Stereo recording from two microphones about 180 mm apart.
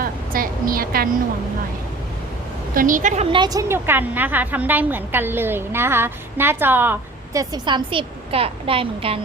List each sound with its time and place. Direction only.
0.0 s a sound: 55° right (ahead or behind)
2.7 s a woman's voice: 45° right (ahead or behind)
3.3 s a woman's voice: 20° right (ahead or behind)